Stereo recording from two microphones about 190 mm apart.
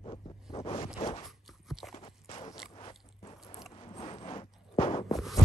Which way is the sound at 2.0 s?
30° left (ahead or behind).